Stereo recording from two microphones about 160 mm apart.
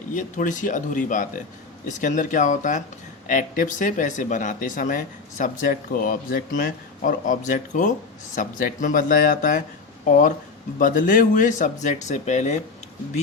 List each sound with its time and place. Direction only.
0.1 s speech: 55° left (ahead or behind)